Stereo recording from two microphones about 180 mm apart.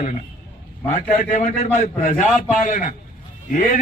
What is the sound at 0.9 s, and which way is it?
A man's voice, 45° left (ahead or behind).